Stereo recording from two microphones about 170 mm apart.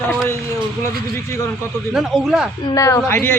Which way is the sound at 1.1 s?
15° left (ahead or behind).